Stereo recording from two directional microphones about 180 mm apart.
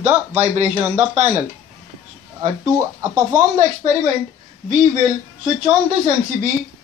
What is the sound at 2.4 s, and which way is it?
Speech, 20° right (ahead or behind).